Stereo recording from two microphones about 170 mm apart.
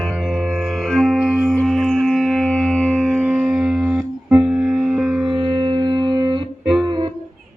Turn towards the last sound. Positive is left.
turn(degrees=-25)  # may be behind; listen again after turning